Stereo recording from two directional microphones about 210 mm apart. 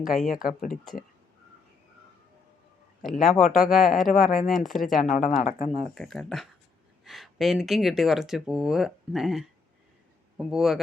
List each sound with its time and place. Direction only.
0.0 s speech: centre (ahead or behind)
0.3 s speech: 40° left (ahead or behind)
3.0 s speech: centre (ahead or behind)
5.0 s speech: 40° left (ahead or behind)
5.8 s a man's voice: centre (ahead or behind)